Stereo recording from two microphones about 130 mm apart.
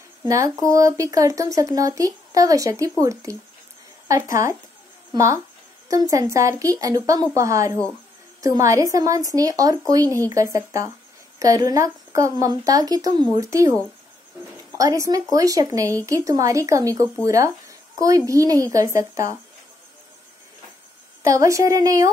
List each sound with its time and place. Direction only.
0.3 s speech: 25° right (ahead or behind)
21.2 s speech: 25° right (ahead or behind)